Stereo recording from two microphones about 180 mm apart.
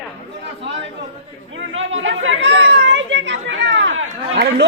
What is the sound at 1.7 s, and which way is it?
Chatter, 90° right.